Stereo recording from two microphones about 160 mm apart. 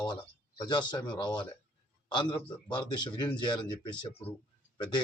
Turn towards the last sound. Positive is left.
turn(degrees=25)  # may be behind; listen again after turning